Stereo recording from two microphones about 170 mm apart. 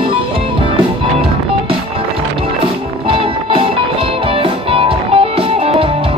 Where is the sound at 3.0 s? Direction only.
35° right (ahead or behind).